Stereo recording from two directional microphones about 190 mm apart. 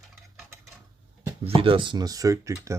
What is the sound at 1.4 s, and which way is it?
Speech, 30° right (ahead or behind).